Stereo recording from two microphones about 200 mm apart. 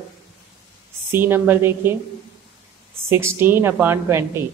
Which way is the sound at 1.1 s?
10° right (ahead or behind).